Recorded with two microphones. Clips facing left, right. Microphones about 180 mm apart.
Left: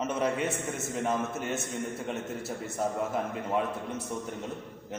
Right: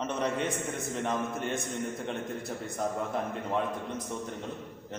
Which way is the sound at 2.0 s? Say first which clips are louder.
Left 1 dB; 5° left (ahead or behind).